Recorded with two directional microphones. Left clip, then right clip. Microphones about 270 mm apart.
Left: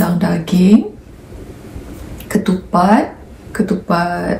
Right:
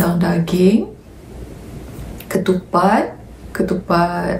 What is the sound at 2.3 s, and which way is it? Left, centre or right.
Speech, centre.